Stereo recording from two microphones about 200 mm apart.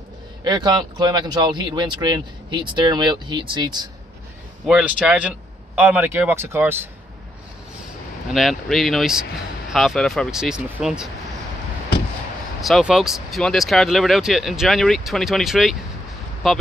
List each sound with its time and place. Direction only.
0.4 s speech: 20° right (ahead or behind)
4.6 s speech: 5° right (ahead or behind)
8.3 s speech: centre (ahead or behind)
12.6 s speech: centre (ahead or behind)